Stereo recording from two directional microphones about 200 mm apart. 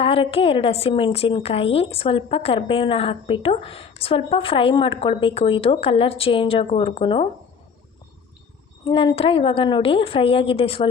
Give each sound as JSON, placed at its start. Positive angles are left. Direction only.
{"t": 0.0, "sound": "a woman's voice", "side_deg": 30}
{"t": 8.8, "sound": "a woman's voice", "side_deg": 20}